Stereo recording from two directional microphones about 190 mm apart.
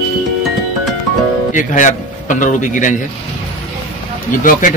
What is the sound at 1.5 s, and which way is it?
A man's voice, 40° left (ahead or behind).